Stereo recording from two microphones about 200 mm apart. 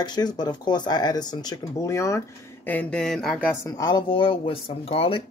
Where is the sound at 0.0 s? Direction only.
20° left (ahead or behind); by 3.5 s 5° left (ahead or behind).